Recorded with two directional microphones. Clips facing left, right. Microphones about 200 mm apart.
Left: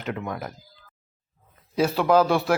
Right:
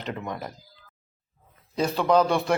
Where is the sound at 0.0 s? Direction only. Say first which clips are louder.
Left 2 dB; 5° left (ahead or behind).